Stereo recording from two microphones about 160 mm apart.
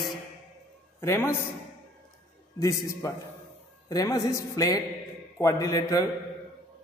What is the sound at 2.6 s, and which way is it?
A man's voice, 20° left (ahead or behind).